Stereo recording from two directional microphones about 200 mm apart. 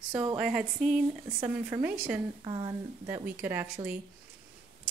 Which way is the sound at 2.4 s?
20° right (ahead or behind).